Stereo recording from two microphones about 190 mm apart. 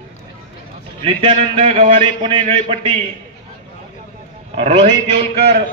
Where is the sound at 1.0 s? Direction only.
30° right (ahead or behind).